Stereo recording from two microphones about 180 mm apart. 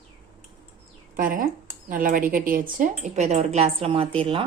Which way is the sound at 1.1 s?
50° right (ahead or behind).